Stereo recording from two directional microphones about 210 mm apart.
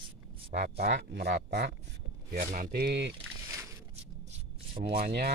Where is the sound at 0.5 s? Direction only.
50° right (ahead or behind).